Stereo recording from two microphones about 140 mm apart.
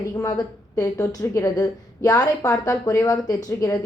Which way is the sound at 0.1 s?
25° left (ahead or behind).